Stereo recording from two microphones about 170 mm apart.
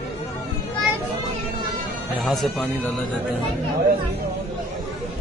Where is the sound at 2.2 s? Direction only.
Centre (ahead or behind).